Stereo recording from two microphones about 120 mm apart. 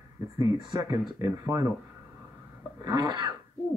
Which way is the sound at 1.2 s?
30° right (ahead or behind).